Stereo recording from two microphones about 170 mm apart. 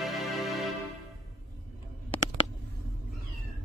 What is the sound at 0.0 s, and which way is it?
Music, centre (ahead or behind).